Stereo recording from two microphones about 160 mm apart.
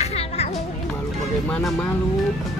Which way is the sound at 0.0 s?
40° left (ahead or behind).